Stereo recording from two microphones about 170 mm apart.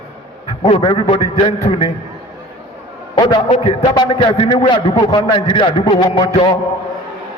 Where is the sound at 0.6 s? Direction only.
35° left (ahead or behind).